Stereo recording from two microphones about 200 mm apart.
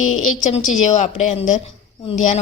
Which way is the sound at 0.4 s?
40° left (ahead or behind).